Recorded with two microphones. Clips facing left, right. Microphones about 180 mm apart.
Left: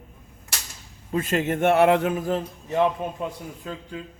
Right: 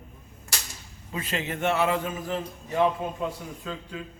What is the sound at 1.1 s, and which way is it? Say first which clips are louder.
Speech: left 8 dB; 45° left (ahead or behind).